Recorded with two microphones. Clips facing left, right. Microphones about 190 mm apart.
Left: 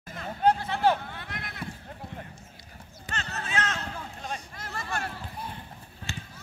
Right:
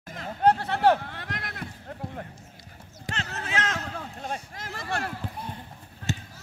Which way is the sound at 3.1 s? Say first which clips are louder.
Right 2 dB; 90° right.